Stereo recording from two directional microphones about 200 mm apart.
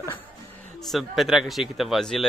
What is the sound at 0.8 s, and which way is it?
Speech, centre (ahead or behind).